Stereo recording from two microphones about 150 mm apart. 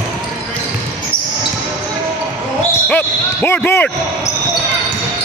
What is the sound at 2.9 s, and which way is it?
Speech, 10° left (ahead or behind).